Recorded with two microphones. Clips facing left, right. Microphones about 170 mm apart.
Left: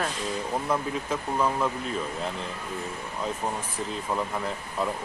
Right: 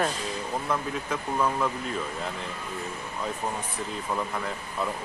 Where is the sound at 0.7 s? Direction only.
5° left (ahead or behind).